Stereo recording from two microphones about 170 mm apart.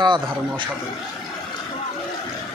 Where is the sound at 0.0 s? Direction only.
25° right (ahead or behind).